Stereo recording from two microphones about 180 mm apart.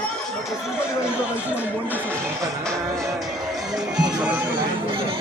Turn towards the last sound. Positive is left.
turn(degrees=-5)  # may be behind; listen again after turning